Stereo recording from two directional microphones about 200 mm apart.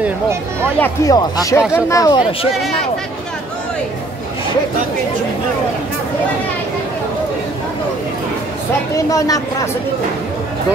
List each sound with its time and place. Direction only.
0.0 s speech: 10° right (ahead or behind)
0.7 s speech: 15° left (ahead or behind)
8.9 s speech: 15° left (ahead or behind)